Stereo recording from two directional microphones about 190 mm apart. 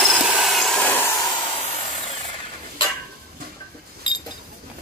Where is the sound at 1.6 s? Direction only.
30° left (ahead or behind).